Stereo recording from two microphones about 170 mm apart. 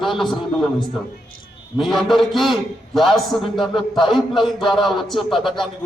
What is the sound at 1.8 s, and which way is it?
A man's voice, centre (ahead or behind).